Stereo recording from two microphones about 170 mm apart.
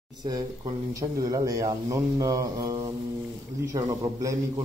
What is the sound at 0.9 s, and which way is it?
Speech, 20° right (ahead or behind).